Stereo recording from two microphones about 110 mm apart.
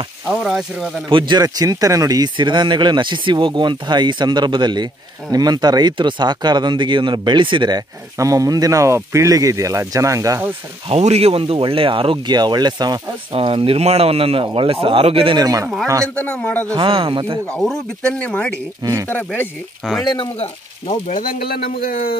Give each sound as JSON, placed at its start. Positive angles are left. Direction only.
{"t": 0.3, "sound": "speech", "side_deg": -5}
{"t": 1.1, "sound": "speech", "side_deg": -45}
{"t": 8.2, "sound": "speech", "side_deg": -30}
{"t": 10.9, "sound": "speech", "side_deg": -75}
{"t": 12.4, "sound": "speech", "side_deg": -40}
{"t": 13.3, "sound": "speech", "side_deg": -55}
{"t": 15.3, "sound": "speech", "side_deg": -35}
{"t": 16.2, "sound": "speech", "side_deg": 10}
{"t": 16.7, "sound": "speech", "side_deg": -55}
{"t": 17.5, "sound": "speech", "side_deg": 5}